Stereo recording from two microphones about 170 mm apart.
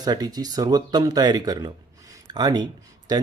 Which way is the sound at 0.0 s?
25° right (ahead or behind).